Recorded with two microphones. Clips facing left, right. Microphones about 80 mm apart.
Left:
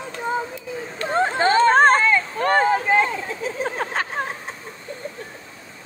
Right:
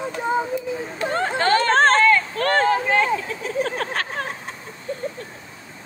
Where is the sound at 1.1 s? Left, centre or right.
Centre.